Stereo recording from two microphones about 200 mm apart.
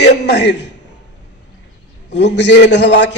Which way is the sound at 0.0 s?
55° left (ahead or behind).